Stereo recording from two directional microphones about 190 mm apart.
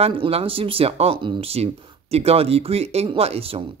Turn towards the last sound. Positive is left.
turn(degrees=-30)  # may be behind; listen again after turning